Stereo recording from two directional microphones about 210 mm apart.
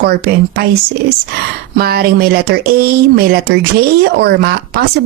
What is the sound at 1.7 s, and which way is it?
Speech, 45° right (ahead or behind).